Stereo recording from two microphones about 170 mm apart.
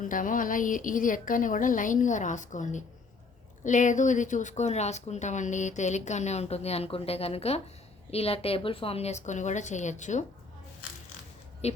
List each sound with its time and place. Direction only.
0.0 s a woman's voice: 50° left (ahead or behind)
11.6 s a woman's voice: 40° left (ahead or behind)